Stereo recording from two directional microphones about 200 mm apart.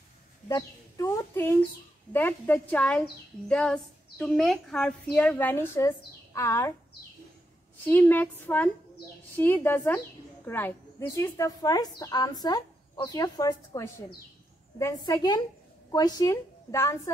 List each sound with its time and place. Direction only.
0.5 s bird: 15° left (ahead or behind)
2.1 s a woman's voice: 10° left (ahead or behind)
7.8 s a woman's voice: 10° left (ahead or behind)